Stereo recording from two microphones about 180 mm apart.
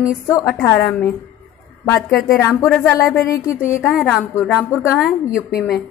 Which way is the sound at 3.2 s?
20° left (ahead or behind).